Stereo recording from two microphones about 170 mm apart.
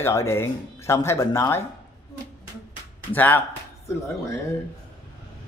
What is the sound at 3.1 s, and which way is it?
Speech, 10° left (ahead or behind).